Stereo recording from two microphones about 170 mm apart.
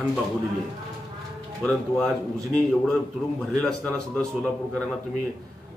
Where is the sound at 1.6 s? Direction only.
5° left (ahead or behind).